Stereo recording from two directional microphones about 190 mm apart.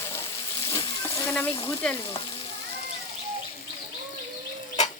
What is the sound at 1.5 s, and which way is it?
Frying, 30° left (ahead or behind).